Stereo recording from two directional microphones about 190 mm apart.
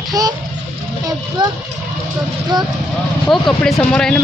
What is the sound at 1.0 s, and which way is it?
Speech, 20° right (ahead or behind).